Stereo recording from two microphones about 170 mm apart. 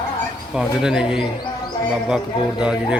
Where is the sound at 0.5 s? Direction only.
5° right (ahead or behind).